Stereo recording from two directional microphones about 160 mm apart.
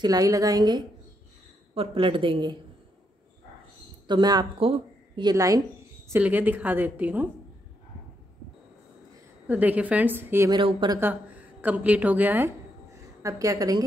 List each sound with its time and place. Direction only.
0.0 s a woman's voice: 25° right (ahead or behind)
4.1 s a woman's voice: 25° right (ahead or behind)
6.1 s a woman's voice: 10° right (ahead or behind)
9.5 s a woman's voice: 10° right (ahead or behind)
10.5 s a woman's voice: 30° right (ahead or behind)
11.0 s a woman's voice: 10° right (ahead or behind)